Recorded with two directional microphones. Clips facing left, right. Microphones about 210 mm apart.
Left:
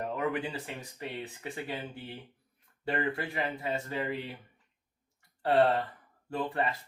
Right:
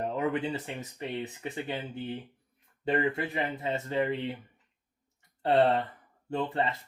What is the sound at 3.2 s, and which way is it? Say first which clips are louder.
Speech: right 2 dB; 20° right (ahead or behind).